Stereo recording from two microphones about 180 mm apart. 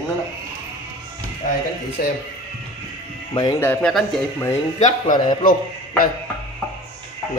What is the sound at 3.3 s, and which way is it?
Speech, 25° left (ahead or behind).